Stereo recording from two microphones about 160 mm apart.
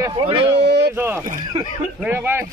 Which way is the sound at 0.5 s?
90° right.